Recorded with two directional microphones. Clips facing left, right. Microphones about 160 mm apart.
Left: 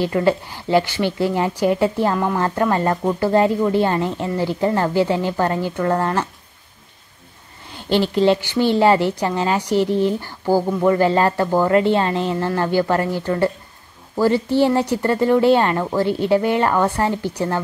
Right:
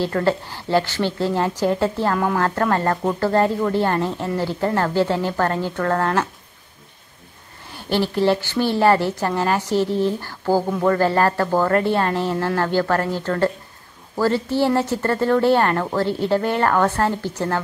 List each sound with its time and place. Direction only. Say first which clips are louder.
0.0 s a woman's voice: left 2 dB; 15° left (ahead or behind)
2.1 s speech: even; centre (ahead or behind)
2.4 s a woman's voice: left 1 dB; 15° left (ahead or behind)
7.7 s a woman's voice: left 3 dB; 20° left (ahead or behind)